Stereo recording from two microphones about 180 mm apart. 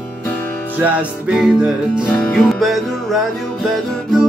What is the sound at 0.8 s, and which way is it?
Music, 5° right (ahead or behind).